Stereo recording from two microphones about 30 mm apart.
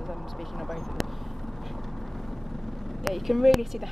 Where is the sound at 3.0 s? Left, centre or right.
Centre.